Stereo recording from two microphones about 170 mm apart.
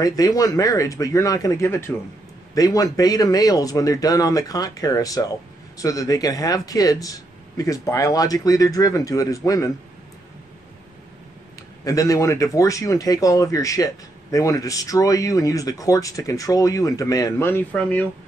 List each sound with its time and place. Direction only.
0.0 s speech: 20° left (ahead or behind)
11.8 s speech: 20° left (ahead or behind)